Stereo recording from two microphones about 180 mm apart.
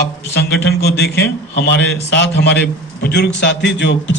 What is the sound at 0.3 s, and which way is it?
A man's voice, 70° left (ahead or behind).